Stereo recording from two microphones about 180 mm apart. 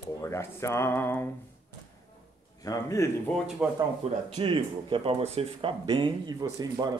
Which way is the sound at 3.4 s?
Centre (ahead or behind).